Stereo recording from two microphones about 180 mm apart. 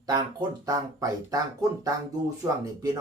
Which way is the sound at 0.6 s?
20° right (ahead or behind).